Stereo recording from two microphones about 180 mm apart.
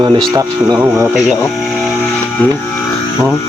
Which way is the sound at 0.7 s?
15° right (ahead or behind).